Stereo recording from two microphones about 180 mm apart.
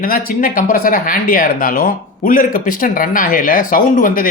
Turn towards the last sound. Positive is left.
turn(degrees=50)  # may be behind; listen again after turning